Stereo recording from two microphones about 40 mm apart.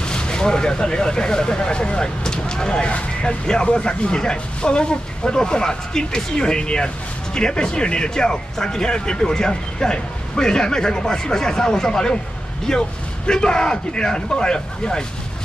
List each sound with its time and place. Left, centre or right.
0.0 s speech: left